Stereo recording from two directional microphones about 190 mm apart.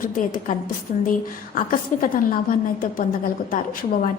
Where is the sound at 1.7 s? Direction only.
45° left (ahead or behind).